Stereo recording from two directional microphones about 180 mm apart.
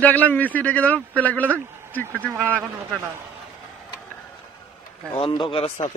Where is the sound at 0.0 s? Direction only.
10° left (ahead or behind).